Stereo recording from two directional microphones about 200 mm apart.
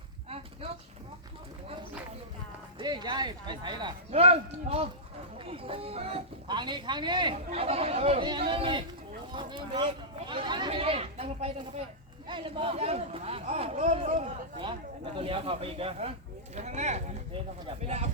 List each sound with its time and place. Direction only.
2.7 s a man's voice: 20° right (ahead or behind)